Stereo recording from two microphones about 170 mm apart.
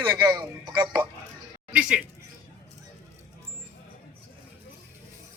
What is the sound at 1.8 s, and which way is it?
Speech, 5° right (ahead or behind).